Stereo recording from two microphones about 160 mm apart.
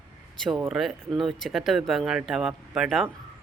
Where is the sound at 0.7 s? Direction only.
Centre (ahead or behind).